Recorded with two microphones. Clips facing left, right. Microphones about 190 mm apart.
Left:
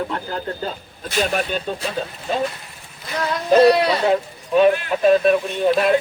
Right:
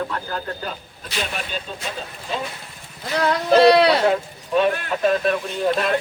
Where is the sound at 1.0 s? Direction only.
45° left (ahead or behind).